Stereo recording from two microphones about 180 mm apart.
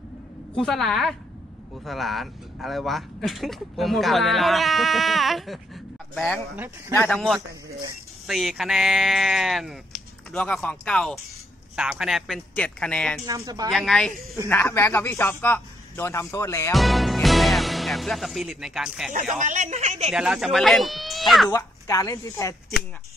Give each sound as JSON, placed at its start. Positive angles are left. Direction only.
{"t": 0.6, "sound": "speech", "side_deg": 0}
{"t": 13.2, "sound": "speech", "side_deg": -20}
{"t": 13.7, "sound": "a man's voice", "side_deg": 0}
{"t": 16.7, "sound": "speech", "side_deg": 0}
{"t": 19.3, "sound": "speech", "side_deg": -45}
{"t": 20.1, "sound": "speech", "side_deg": -5}
{"t": 21.5, "sound": "a man's voice", "side_deg": 20}